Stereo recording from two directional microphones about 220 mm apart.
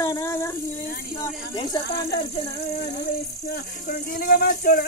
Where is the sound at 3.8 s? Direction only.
40° left (ahead or behind).